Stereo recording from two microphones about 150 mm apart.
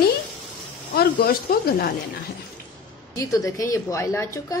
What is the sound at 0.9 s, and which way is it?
Speech, 90° left.